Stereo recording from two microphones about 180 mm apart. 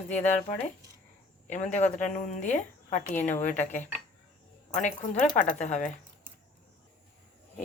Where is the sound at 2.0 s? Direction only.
45° left (ahead or behind).